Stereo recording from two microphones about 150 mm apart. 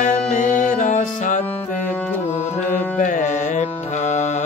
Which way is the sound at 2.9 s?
55° left (ahead or behind).